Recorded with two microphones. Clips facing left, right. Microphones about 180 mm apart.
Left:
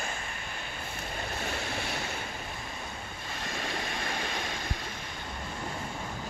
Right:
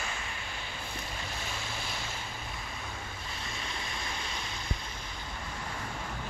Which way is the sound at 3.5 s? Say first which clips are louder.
Left 7 dB; 65° left (ahead or behind).